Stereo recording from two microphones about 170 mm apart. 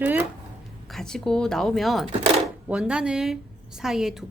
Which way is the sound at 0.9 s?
5° left (ahead or behind).